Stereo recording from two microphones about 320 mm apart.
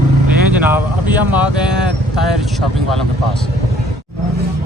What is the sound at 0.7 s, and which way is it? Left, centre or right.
Speech, centre.